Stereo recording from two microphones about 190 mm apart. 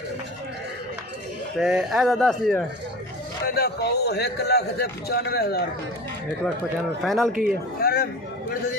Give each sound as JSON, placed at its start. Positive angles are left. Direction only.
{"t": 1.6, "sound": "speech", "side_deg": -5}
{"t": 3.4, "sound": "a man's voice", "side_deg": 60}
{"t": 7.0, "sound": "speech", "side_deg": 0}
{"t": 7.8, "sound": "speech", "side_deg": 55}